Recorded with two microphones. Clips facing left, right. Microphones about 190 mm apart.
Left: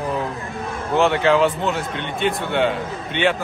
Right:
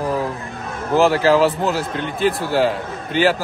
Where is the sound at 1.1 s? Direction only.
35° right (ahead or behind).